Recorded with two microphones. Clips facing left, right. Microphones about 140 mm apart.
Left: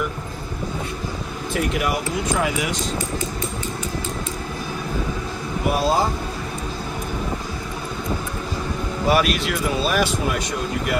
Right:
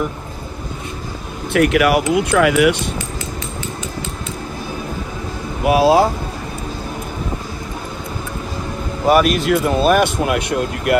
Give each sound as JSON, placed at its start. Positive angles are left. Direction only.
{"t": 1.5, "sound": "speech", "side_deg": -75}
{"t": 5.7, "sound": "speech", "side_deg": -70}
{"t": 9.0, "sound": "speech", "side_deg": -45}